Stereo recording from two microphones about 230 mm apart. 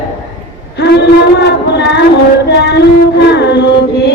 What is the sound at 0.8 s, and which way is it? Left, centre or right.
Female singing, left.